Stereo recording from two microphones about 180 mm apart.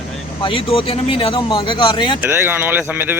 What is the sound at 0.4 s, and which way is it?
Speech, 30° left (ahead or behind).